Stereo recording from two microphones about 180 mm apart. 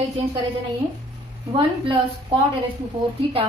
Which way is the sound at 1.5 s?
25° right (ahead or behind).